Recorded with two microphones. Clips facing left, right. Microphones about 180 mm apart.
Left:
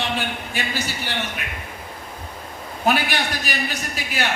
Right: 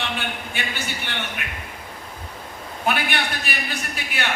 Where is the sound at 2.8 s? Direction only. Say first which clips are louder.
Left 3 dB; 40° left (ahead or behind).